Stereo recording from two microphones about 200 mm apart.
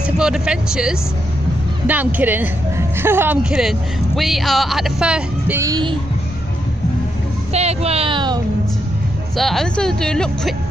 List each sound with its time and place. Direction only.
0.0 s a man's voice: 5° right (ahead or behind)
5.6 s speech: 20° right (ahead or behind)
7.5 s speech: 30° right (ahead or behind)
9.4 s a man's voice: centre (ahead or behind)